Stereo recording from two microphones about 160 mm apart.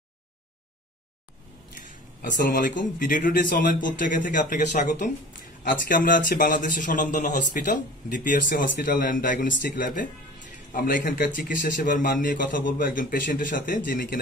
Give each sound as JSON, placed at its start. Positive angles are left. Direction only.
{"t": 2.2, "sound": "a man's voice", "side_deg": 55}